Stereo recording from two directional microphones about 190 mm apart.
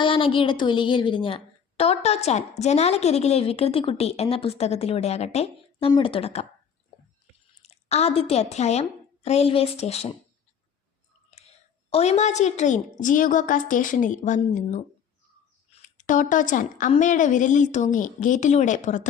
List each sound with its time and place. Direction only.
0.0 s a woman's voice: 30° left (ahead or behind)
7.6 s a woman's voice: 35° left (ahead or behind)
11.3 s a woman's voice: 35° left (ahead or behind)